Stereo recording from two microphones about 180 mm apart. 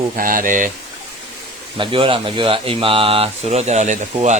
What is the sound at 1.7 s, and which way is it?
A man's voice, 30° right (ahead or behind).